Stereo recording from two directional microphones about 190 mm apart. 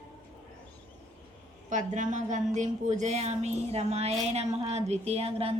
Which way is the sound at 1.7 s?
40° right (ahead or behind).